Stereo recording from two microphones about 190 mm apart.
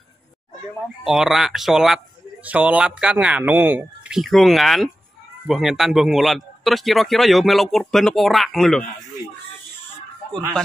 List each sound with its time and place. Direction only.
1.0 s a man's voice: centre (ahead or behind)